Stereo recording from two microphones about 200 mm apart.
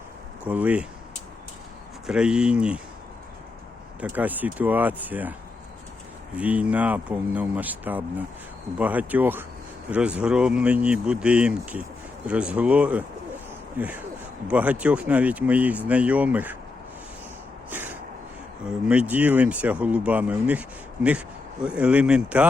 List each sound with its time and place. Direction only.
0.4 s speech: 5° right (ahead or behind)
2.0 s speech: 5° right (ahead or behind)
4.0 s speech: 10° right (ahead or behind)
6.3 s speech: 5° right (ahead or behind)
17.7 s a sound: 10° right (ahead or behind)
18.9 s speech: 5° right (ahead or behind)